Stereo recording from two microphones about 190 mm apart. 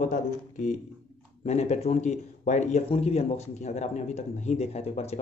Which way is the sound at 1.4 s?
35° left (ahead or behind).